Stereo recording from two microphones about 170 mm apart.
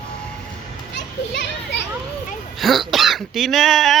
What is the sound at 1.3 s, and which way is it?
Children playing, 90° left.